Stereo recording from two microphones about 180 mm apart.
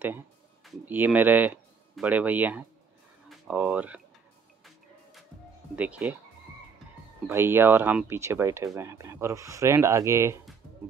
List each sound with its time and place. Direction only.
0.7 s speech: 10° right (ahead or behind)
5.8 s speech: 10° right (ahead or behind)
7.2 s speech: 15° right (ahead or behind)